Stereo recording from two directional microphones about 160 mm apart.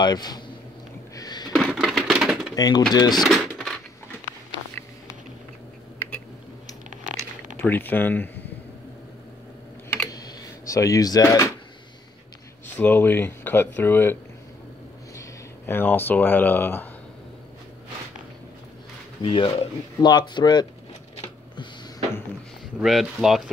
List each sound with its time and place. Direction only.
0.0 s speech: 25° left (ahead or behind)
1.1 s a sound: 25° left (ahead or behind)
1.7 s typewriter: centre (ahead or behind)
2.5 s speech: 25° left (ahead or behind)
3.2 s a sound: centre (ahead or behind)
7.6 s speech: 10° left (ahead or behind)
10.1 s a sound: 20° left (ahead or behind)
12.7 s speech: 10° left (ahead or behind)
15.1 s speech: 15° left (ahead or behind)
19.2 s speech: 35° left (ahead or behind)
22.8 s speech: centre (ahead or behind)